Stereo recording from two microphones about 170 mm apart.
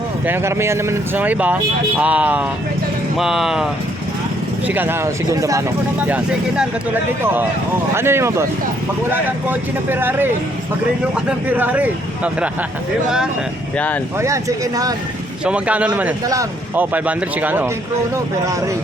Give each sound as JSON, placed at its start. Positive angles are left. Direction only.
{"t": 0.3, "sound": "speech", "side_deg": -15}
{"t": 6.0, "sound": "speech", "side_deg": -10}
{"t": 7.9, "sound": "speech", "side_deg": -15}
{"t": 13.7, "sound": "speech", "side_deg": 10}
{"t": 14.2, "sound": "speech", "side_deg": -20}
{"t": 15.4, "sound": "speech", "side_deg": -5}
{"t": 16.2, "sound": "speech", "side_deg": -20}